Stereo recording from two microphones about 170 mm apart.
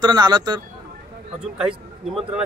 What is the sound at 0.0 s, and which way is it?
Speech, 25° right (ahead or behind).